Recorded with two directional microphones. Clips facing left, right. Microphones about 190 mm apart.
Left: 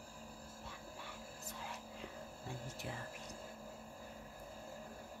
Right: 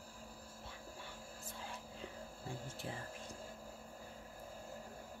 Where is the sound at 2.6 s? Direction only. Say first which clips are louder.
Even; 30° right (ahead or behind).